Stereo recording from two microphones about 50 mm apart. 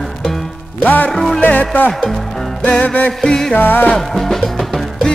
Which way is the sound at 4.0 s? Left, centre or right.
Centre.